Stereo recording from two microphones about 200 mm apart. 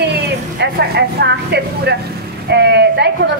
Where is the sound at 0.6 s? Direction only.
55° right (ahead or behind).